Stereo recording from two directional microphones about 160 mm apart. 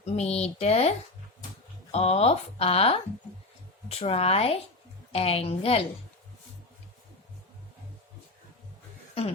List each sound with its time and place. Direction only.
0.0 s speech: 40° left (ahead or behind)